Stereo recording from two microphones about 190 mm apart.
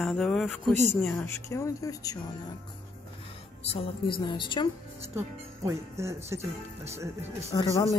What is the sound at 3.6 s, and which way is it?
A woman's voice, 30° left (ahead or behind).